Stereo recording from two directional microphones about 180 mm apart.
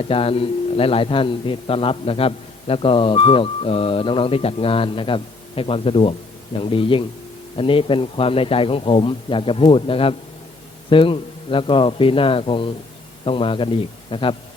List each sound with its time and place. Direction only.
0.0 s a man's voice: 30° left (ahead or behind)